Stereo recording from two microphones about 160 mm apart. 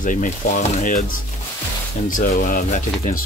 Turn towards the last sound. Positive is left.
turn(degrees=55)  # may be behind; listen again after turning